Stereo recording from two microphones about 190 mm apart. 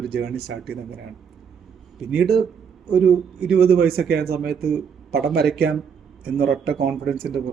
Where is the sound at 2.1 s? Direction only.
55° right (ahead or behind).